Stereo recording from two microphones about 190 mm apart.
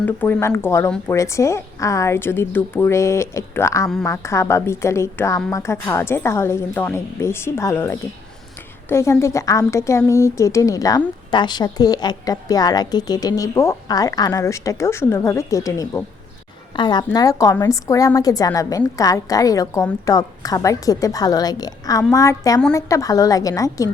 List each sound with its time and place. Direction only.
0.0 s a woman's voice: 10° left (ahead or behind)